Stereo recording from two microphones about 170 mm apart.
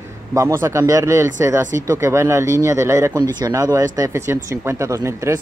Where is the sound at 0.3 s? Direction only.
20° right (ahead or behind).